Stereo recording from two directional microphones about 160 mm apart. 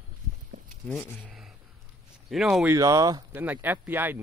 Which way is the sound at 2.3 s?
5° right (ahead or behind).